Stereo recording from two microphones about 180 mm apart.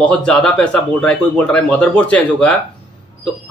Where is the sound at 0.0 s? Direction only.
5° left (ahead or behind).